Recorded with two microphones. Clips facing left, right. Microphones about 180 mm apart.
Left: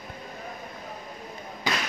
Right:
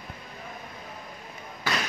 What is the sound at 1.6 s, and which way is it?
Basketball bounce, 15° left (ahead or behind).